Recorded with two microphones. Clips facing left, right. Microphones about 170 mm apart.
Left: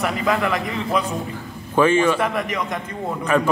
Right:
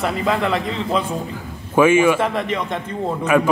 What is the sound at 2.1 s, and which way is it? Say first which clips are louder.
Speech: right 2 dB; 25° right (ahead or behind).